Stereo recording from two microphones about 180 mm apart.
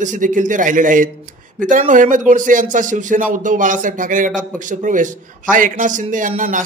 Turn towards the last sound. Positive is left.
turn(degrees=-45)  # may be behind; listen again after turning